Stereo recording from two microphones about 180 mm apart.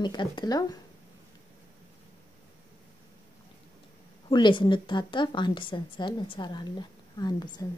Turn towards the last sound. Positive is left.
turn(degrees=20)  # may be behind; listen again after turning